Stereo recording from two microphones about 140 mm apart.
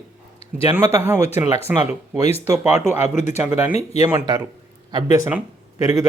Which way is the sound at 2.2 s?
50° left (ahead or behind).